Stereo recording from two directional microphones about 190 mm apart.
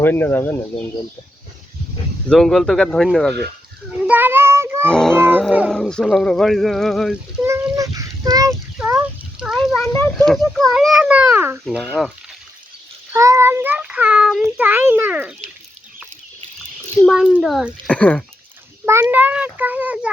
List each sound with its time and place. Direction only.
0.0 s speech: 10° left (ahead or behind)
2.3 s speech: centre (ahead or behind)
4.0 s child singing: 10° right (ahead or behind)
4.9 s a sound: 5° left (ahead or behind)
5.1 s music: 10° right (ahead or behind)
5.4 s speech: centre (ahead or behind)
7.4 s a sound: 15° right (ahead or behind)
8.8 s a sound: 5° right (ahead or behind)
9.7 s a child's voice: 10° left (ahead or behind); by 12.1 s 5° right (ahead or behind)
13.1 s a child's voice: 15° right (ahead or behind)
17.0 s speech: centre (ahead or behind)
18.9 s a child's voice: 15° right (ahead or behind)